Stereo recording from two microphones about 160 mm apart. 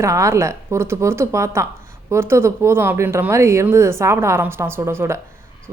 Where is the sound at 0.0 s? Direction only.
20° right (ahead or behind).